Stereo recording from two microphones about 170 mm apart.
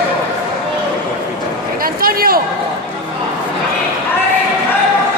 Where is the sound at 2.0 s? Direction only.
60° right (ahead or behind).